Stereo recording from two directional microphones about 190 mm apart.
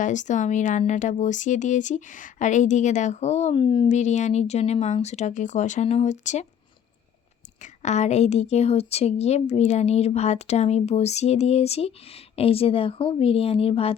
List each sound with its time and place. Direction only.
0.0 s speech: 40° left (ahead or behind)
7.6 s speech: 35° left (ahead or behind)